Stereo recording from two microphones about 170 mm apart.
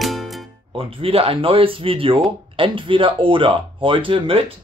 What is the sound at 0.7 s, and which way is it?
Speech, 30° right (ahead or behind).